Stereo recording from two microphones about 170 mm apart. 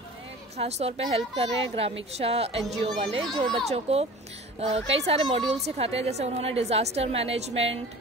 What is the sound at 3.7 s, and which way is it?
Speech, 35° right (ahead or behind).